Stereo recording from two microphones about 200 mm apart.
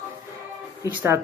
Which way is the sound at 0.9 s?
10° right (ahead or behind).